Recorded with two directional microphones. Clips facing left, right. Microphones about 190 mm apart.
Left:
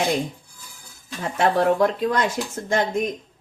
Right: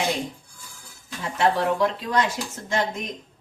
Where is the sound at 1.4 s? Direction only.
50° left (ahead or behind).